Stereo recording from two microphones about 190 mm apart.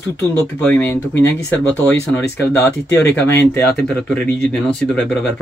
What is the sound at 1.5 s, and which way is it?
Speech, 5° left (ahead or behind).